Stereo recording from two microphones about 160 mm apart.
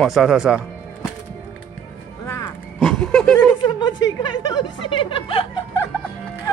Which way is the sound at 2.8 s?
Centre (ahead or behind).